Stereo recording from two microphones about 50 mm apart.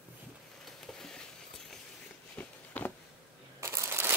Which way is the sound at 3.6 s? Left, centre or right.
Right.